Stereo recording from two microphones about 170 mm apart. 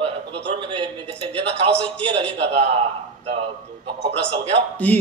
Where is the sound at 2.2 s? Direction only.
35° right (ahead or behind).